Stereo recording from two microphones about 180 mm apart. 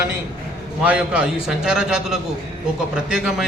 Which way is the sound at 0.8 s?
5° right (ahead or behind).